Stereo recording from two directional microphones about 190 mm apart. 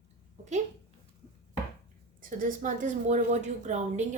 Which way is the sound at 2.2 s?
45° right (ahead or behind).